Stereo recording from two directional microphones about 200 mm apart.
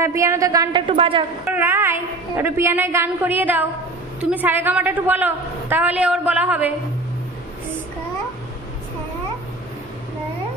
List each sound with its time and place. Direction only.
0.0 s a woman's voice: 15° right (ahead or behind)
1.5 s a woman's voice: 10° right (ahead or behind)